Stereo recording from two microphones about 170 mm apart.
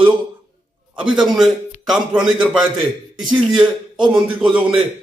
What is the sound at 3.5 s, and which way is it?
Speech, 30° right (ahead or behind).